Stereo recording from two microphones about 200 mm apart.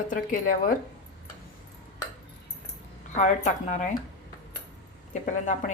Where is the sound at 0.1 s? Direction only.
40° left (ahead or behind).